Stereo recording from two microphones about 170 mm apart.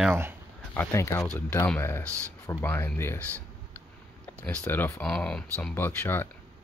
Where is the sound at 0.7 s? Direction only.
15° left (ahead or behind).